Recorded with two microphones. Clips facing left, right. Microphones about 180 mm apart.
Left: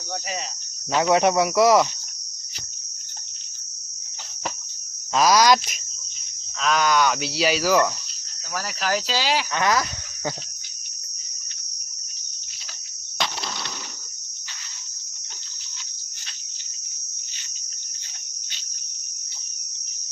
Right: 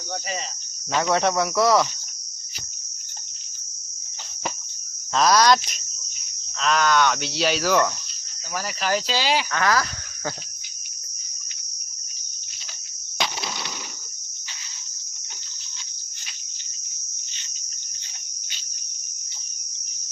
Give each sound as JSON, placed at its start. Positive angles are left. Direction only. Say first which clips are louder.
{"t": 0.9, "sound": "cricket", "louder": "left 3 dB", "side_deg": 10}
{"t": 5.1, "sound": "speech", "louder": "left 1 dB", "side_deg": 5}
{"t": 6.6, "sound": "speech", "louder": "even", "side_deg": 0}
{"t": 9.5, "sound": "speech", "louder": "even", "side_deg": 20}
{"t": 13.1, "sound": "cricket", "louder": "even", "side_deg": -5}